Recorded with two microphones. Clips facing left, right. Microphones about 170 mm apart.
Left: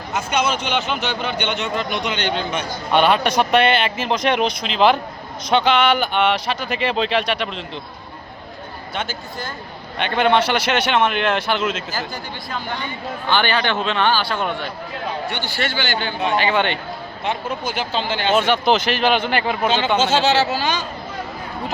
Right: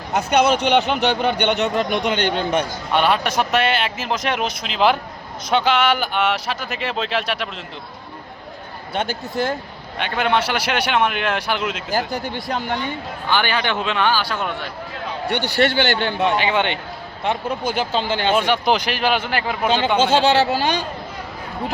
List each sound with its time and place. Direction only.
0.1 s speech: 60° right (ahead or behind)
1.8 s speech: 50° right (ahead or behind)
2.9 s speech: centre (ahead or behind)
9.0 s speech: 65° right (ahead or behind)
10.0 s speech: 5° right (ahead or behind)
12.2 s speech: 70° right (ahead or behind)
13.2 s speech: 10° right (ahead or behind)
15.3 s speech: 65° right (ahead or behind)
16.4 s speech: 15° right (ahead or behind)
17.2 s speech: 55° right (ahead or behind)
18.3 s speech: 10° right (ahead or behind)
20.0 s speech: 55° right (ahead or behind)